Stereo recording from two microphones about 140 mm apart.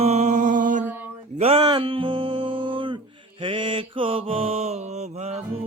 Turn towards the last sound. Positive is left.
turn(degrees=-50)  # may be behind; listen again after turning